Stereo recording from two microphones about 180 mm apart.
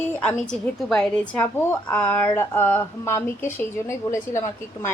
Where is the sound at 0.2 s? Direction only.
5° left (ahead or behind).